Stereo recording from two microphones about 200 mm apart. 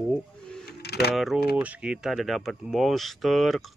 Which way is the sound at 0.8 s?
55° left (ahead or behind).